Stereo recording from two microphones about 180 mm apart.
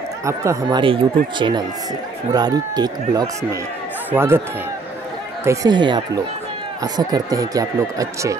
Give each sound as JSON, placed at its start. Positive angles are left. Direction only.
{"t": 0.2, "sound": "speech", "side_deg": -15}
{"t": 5.4, "sound": "speech", "side_deg": -15}